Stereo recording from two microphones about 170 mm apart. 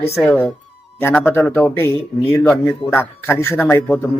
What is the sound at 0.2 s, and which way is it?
A man's voice, 5° left (ahead or behind).